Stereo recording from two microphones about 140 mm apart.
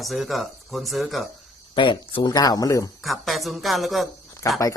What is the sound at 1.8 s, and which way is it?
Speech, 35° left (ahead or behind).